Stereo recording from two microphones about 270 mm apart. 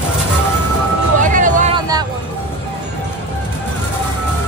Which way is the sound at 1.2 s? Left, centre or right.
Right.